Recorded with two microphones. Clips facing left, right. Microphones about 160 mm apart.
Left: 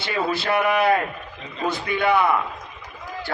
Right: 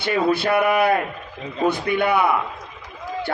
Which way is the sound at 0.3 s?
60° right (ahead or behind).